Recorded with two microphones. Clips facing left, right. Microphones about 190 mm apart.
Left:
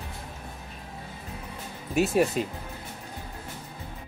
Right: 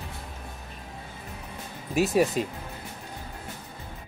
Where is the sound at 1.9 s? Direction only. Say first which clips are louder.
Even; centre (ahead or behind).